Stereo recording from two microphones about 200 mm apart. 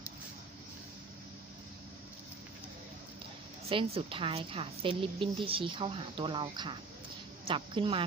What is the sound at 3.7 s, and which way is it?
Speech, 25° right (ahead or behind).